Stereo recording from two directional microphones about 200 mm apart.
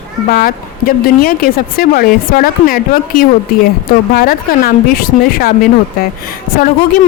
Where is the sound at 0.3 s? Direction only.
45° left (ahead or behind).